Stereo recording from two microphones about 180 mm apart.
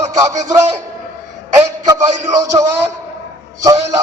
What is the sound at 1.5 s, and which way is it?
Music, 20° right (ahead or behind).